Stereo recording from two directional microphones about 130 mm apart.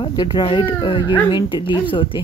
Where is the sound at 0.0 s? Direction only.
35° left (ahead or behind).